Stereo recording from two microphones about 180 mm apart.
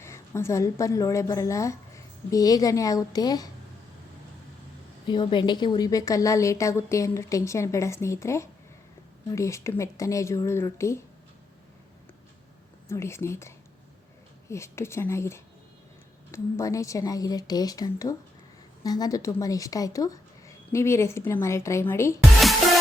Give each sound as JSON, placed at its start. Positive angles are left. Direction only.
{"t": 0.0, "sound": "a woman's voice", "side_deg": 15}
{"t": 5.0, "sound": "a woman's voice", "side_deg": 25}
{"t": 12.9, "sound": "a woman's voice", "side_deg": 15}
{"t": 14.5, "sound": "a woman's voice", "side_deg": 15}